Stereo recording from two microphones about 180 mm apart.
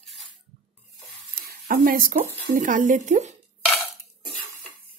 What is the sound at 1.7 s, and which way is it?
Speech, 50° right (ahead or behind).